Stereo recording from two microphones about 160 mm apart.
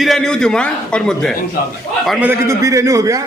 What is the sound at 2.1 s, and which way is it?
Speech, 10° right (ahead or behind).